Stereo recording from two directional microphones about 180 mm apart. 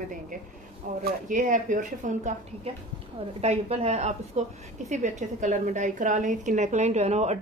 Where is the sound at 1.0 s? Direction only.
45° right (ahead or behind).